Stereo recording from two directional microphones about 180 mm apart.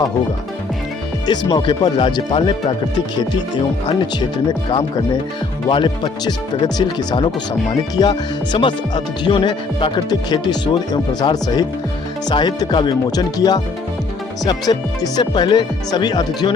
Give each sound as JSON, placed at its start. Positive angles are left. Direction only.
{"t": 1.3, "sound": "speech", "side_deg": 25}
{"t": 5.6, "sound": "speech", "side_deg": 25}